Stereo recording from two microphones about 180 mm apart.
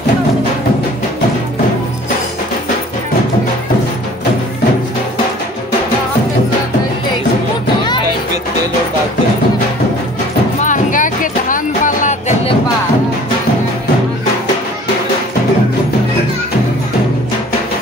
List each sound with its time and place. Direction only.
10.6 s music: 45° left (ahead or behind)